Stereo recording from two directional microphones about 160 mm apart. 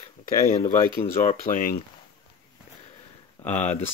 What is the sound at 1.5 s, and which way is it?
Speech, 60° left (ahead or behind).